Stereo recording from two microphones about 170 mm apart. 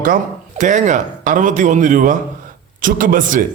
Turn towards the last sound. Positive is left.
turn(degrees=-50)  # may be behind; listen again after turning